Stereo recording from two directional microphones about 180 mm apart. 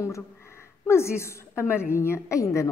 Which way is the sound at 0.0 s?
15° left (ahead or behind).